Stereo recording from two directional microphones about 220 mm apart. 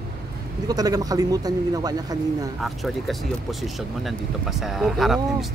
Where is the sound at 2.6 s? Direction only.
Centre (ahead or behind).